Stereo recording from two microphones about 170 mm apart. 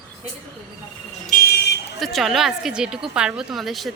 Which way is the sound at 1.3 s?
60° left (ahead or behind).